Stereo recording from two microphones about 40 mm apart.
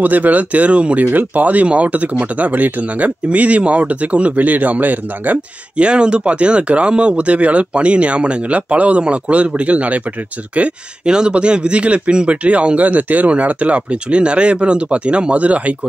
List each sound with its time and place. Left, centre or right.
0.0 s speech: right
1.0 s speech: right
5.8 s speech: right
11.1 s speech: right